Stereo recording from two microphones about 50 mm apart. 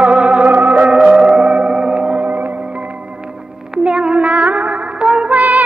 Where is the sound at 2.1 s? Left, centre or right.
Right.